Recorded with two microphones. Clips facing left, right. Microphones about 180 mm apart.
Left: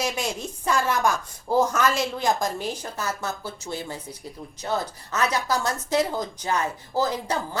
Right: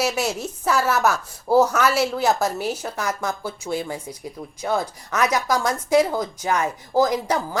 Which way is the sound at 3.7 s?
90° right.